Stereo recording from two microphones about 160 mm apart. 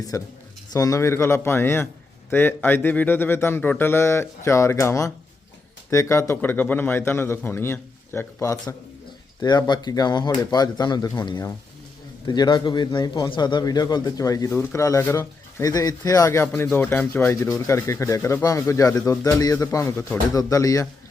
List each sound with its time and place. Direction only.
0.1 s a man's voice: 20° left (ahead or behind)